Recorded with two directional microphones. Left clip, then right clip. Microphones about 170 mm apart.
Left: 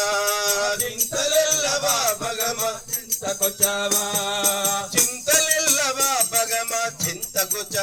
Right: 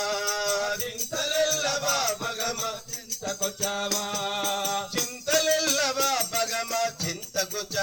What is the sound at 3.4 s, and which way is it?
Music, 15° left (ahead or behind).